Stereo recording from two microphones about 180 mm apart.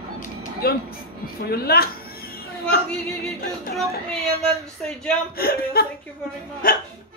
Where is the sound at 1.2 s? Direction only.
60° left (ahead or behind).